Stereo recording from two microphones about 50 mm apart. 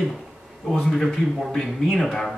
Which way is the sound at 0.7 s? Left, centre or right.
Centre.